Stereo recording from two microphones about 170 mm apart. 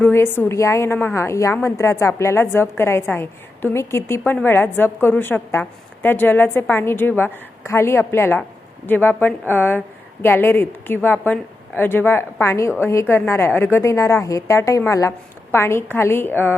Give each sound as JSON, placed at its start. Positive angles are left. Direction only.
{"t": 0.0, "sound": "a woman's voice", "side_deg": 15}